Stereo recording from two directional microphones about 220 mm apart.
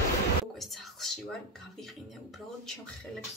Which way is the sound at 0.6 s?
Centre (ahead or behind).